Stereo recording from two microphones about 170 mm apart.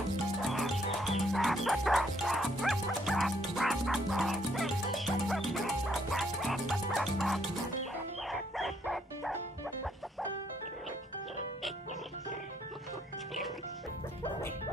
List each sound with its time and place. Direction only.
0.4 s music: centre (ahead or behind)